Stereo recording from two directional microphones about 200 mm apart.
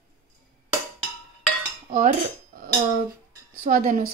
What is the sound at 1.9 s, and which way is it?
Cutlery, 40° right (ahead or behind).